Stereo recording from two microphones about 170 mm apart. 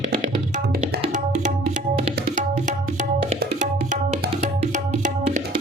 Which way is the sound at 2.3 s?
50° right (ahead or behind).